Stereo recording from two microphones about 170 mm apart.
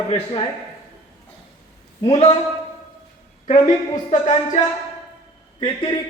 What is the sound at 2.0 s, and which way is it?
Speech, 35° left (ahead or behind).